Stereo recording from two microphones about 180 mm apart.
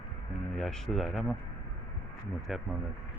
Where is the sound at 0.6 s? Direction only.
Centre (ahead or behind).